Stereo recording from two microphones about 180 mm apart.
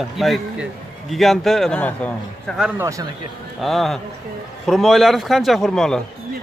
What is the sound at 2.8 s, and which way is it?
Speech, 20° right (ahead or behind).